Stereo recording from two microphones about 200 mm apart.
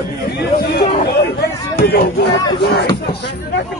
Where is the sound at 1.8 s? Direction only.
50° left (ahead or behind).